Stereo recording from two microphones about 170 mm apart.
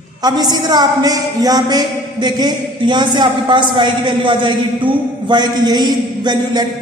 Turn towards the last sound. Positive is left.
turn(degrees=-25)  # may be behind; listen again after turning